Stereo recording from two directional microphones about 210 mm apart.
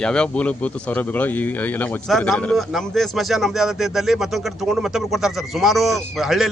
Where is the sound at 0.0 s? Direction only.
5° left (ahead or behind).